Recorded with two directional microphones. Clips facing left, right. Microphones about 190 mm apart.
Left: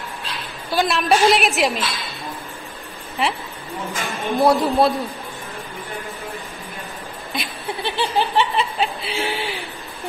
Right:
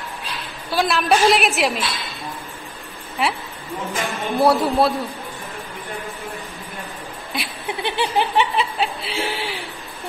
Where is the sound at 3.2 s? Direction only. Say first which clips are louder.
Even; centre (ahead or behind).